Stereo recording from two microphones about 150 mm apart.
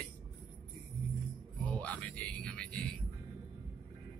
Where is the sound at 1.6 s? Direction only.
10° left (ahead or behind).